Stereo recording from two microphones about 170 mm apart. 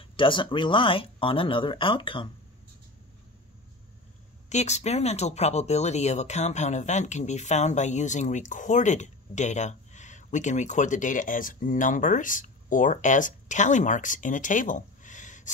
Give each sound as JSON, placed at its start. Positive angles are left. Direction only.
{"t": 0.0, "sound": "speech", "side_deg": 30}
{"t": 4.5, "sound": "speech", "side_deg": 40}